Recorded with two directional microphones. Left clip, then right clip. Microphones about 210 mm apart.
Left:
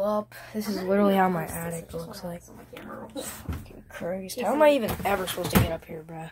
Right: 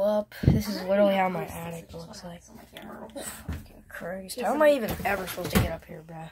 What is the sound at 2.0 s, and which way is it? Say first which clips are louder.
Speech: left 5 dB; 15° left (ahead or behind).